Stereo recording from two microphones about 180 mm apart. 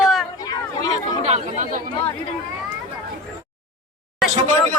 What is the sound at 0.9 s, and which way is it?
Speech, 40° right (ahead or behind).